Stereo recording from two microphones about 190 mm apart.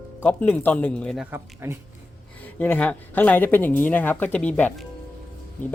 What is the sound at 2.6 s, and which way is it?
Speech, 10° left (ahead or behind).